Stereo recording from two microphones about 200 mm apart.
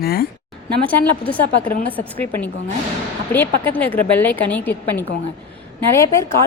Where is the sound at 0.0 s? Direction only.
50° left (ahead or behind).